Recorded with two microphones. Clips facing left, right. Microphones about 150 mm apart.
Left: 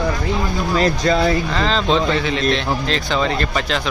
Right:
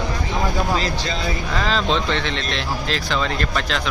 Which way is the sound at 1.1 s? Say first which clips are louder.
Left 9 dB; 50° left (ahead or behind).